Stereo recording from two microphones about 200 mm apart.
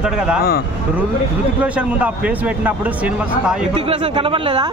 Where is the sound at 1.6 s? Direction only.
5° right (ahead or behind).